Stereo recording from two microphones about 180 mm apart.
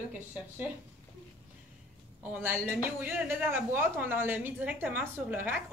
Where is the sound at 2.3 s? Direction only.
10° right (ahead or behind).